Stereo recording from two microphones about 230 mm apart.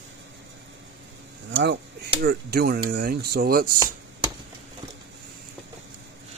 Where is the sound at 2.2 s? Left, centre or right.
Right.